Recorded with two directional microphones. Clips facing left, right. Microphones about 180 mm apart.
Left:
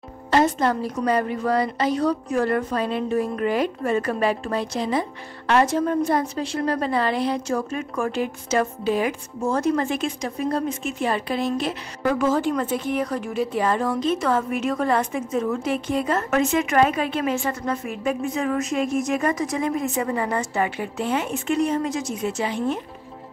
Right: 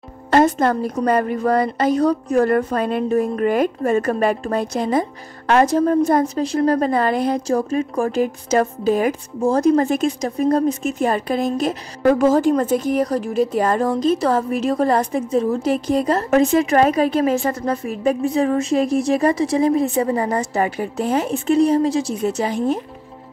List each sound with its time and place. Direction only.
0.3 s a woman's voice: 50° right (ahead or behind)